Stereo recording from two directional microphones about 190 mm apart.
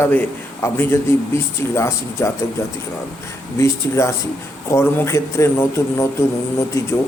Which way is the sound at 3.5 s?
15° left (ahead or behind).